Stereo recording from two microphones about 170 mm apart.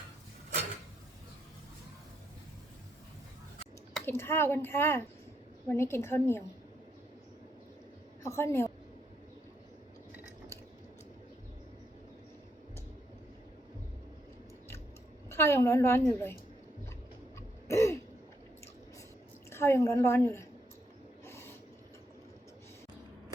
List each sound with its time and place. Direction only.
3.9 s speech: 15° left (ahead or behind)
8.2 s speech: 15° left (ahead or behind)
15.3 s speech: 15° left (ahead or behind)
17.7 s throat clearing: 15° left (ahead or behind)
19.5 s speech: 15° left (ahead or behind)
21.2 s a sound: 15° left (ahead or behind)